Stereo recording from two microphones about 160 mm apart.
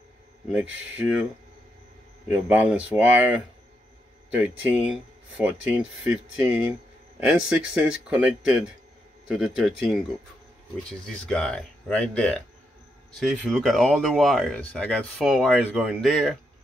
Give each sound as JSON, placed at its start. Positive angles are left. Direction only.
{"t": 0.5, "sound": "speech", "side_deg": -10}
{"t": 2.3, "sound": "speech", "side_deg": -10}
{"t": 11.2, "sound": "speech", "side_deg": 5}